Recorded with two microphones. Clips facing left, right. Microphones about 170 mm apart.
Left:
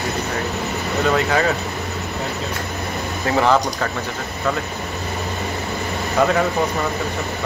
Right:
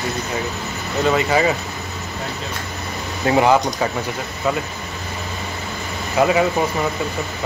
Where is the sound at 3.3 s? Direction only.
15° right (ahead or behind).